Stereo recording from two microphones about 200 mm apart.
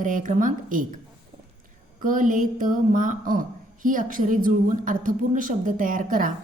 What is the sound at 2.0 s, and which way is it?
A woman's voice, 40° right (ahead or behind).